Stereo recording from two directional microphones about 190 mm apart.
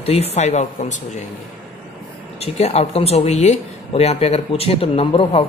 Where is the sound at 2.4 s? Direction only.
35° left (ahead or behind).